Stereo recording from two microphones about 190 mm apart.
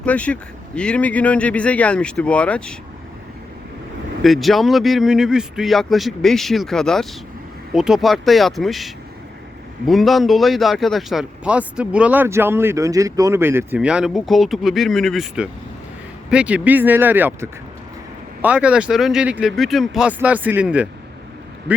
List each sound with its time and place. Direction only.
0.0 s speech: 5° left (ahead or behind)
4.2 s a man's voice: centre (ahead or behind)